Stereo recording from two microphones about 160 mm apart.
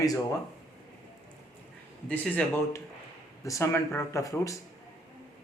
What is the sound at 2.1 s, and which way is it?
Speech, 10° left (ahead or behind).